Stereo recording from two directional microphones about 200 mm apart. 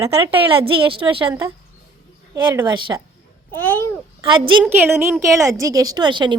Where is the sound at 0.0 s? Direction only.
30° right (ahead or behind).